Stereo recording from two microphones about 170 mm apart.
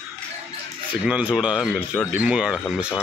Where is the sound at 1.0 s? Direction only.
5° right (ahead or behind).